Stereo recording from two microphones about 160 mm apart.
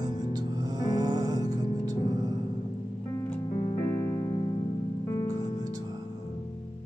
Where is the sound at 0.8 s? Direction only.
25° right (ahead or behind).